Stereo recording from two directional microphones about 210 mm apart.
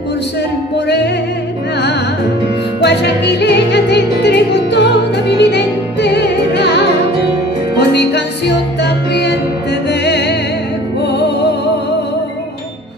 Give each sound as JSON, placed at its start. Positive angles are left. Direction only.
{"t": 2.8, "sound": "music", "side_deg": 55}